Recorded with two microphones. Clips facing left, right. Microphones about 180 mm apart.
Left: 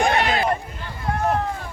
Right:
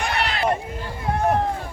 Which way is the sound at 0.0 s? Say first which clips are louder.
Left 6 dB; 50° left (ahead or behind).